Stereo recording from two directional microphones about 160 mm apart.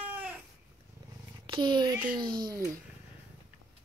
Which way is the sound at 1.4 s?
30° right (ahead or behind).